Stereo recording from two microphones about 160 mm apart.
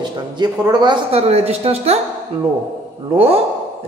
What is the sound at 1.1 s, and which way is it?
Speech, 40° right (ahead or behind).